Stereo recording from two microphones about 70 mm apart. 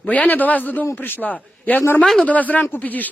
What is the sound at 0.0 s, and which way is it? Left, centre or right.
Speech, left.